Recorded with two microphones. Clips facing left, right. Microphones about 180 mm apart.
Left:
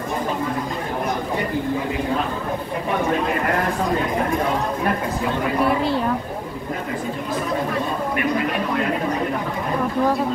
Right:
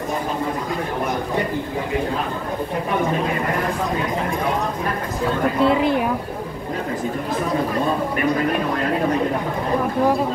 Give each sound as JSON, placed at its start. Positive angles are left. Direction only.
{"t": 5.6, "sound": "speech", "side_deg": -20}